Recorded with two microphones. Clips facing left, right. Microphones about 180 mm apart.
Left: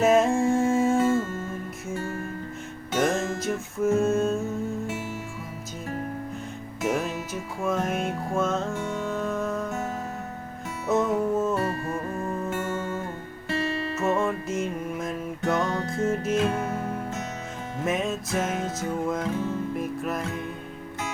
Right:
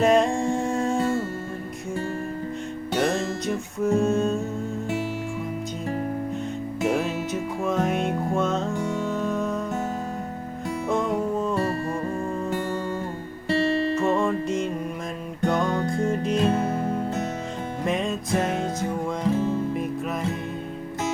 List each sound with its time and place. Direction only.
0.0 s humming: 5° left (ahead or behind)
3.4 s music: centre (ahead or behind)
6.8 s music: centre (ahead or behind)
10.8 s music: 5° left (ahead or behind)
11.5 s music: 30° right (ahead or behind)
13.9 s music: centre (ahead or behind)
16.3 s music: 35° right (ahead or behind)
17.8 s music: centre (ahead or behind)